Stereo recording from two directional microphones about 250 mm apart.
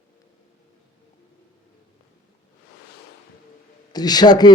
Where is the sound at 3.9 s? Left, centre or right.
Centre.